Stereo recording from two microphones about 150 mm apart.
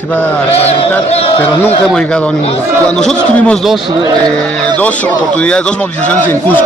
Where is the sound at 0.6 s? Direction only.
40° left (ahead or behind).